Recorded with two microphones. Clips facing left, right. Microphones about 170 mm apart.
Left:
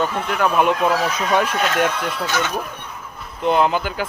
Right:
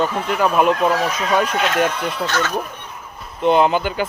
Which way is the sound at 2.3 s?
10° left (ahead or behind).